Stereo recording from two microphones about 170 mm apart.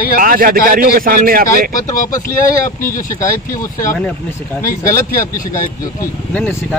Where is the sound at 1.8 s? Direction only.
50° left (ahead or behind).